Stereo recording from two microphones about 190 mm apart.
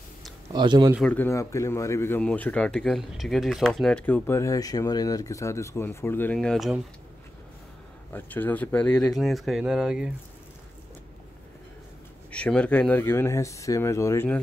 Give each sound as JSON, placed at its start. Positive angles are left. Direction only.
{"t": 0.5, "sound": "speech", "side_deg": -25}
{"t": 1.1, "sound": "speech", "side_deg": 15}
{"t": 8.1, "sound": "speech", "side_deg": 10}
{"t": 12.3, "sound": "speech", "side_deg": 5}